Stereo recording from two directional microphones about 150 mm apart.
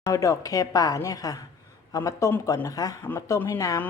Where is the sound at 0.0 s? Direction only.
20° left (ahead or behind).